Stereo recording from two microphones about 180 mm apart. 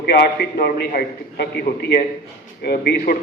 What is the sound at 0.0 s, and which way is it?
A man's voice, 60° left (ahead or behind).